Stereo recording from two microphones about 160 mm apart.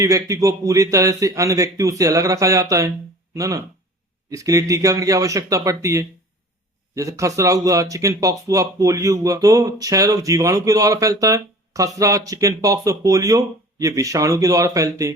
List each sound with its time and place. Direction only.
0.0 s speech: 20° right (ahead or behind)